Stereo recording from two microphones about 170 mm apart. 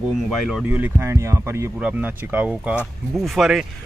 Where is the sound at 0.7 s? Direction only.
10° right (ahead or behind).